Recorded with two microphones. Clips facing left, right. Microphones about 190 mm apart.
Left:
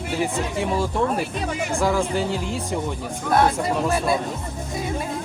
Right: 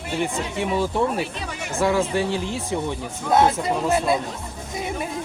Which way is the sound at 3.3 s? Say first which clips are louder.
Right 1 dB; 20° right (ahead or behind).